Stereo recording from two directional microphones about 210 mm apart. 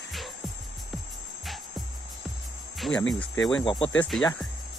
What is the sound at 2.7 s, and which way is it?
Speech, 5° left (ahead or behind).